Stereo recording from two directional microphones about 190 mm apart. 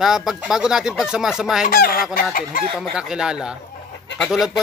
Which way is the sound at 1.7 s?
50° left (ahead or behind).